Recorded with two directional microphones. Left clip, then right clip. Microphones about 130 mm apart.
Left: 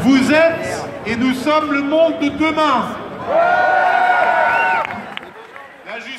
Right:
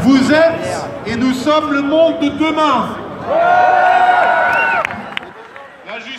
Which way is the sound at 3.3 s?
Centre (ahead or behind).